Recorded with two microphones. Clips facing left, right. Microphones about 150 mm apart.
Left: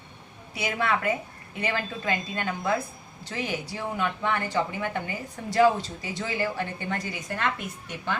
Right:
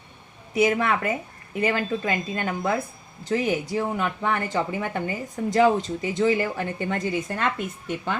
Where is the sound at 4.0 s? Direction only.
40° right (ahead or behind).